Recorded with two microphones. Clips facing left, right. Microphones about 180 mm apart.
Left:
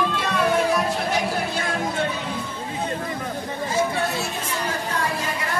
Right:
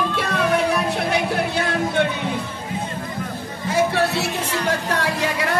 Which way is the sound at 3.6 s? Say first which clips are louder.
Right 5 dB; 70° right (ahead or behind).